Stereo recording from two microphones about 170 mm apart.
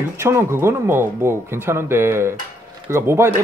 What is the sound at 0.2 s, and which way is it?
Speech, 15° right (ahead or behind).